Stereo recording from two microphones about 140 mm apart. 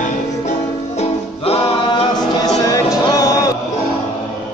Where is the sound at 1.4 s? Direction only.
45° left (ahead or behind).